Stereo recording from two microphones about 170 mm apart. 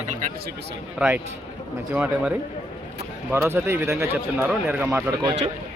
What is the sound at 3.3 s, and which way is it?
Speech, 15° right (ahead or behind).